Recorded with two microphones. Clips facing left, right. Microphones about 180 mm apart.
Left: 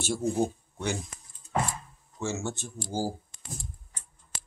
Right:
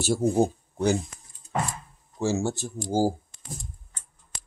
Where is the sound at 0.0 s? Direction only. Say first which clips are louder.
Right 6 dB; 40° right (ahead or behind).